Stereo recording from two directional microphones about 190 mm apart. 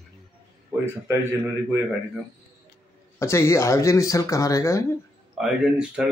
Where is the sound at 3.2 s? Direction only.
15° left (ahead or behind).